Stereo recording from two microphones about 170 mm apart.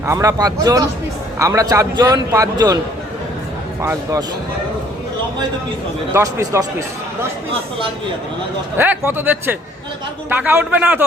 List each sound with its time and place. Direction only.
0.0 s a man's voice: 15° right (ahead or behind)
3.8 s a man's voice: 15° right (ahead or behind)
6.1 s a man's voice: 20° right (ahead or behind)
8.8 s a man's voice: 10° right (ahead or behind)